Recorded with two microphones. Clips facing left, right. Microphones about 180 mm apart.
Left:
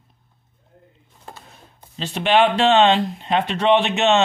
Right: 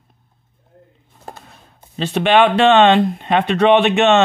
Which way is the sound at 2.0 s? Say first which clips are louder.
Right 4 dB; 60° right (ahead or behind).